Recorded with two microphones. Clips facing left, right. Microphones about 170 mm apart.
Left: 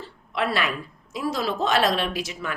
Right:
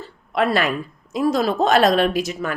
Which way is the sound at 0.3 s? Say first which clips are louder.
Right 6 dB; 45° right (ahead or behind).